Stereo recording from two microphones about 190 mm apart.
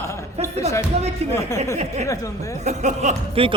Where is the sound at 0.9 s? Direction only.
35° right (ahead or behind).